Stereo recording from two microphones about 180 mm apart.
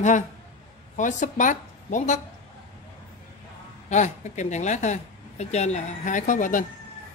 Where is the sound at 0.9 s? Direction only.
45° left (ahead or behind).